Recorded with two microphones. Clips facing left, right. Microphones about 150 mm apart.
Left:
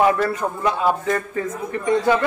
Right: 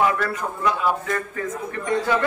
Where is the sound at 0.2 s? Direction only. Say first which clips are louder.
Left 3 dB; 30° left (ahead or behind).